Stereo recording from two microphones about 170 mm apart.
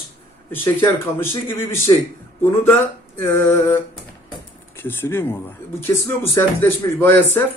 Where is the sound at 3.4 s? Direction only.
15° left (ahead or behind).